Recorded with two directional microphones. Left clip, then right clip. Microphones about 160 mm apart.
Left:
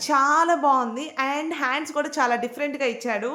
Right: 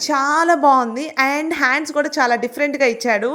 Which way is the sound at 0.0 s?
25° right (ahead or behind).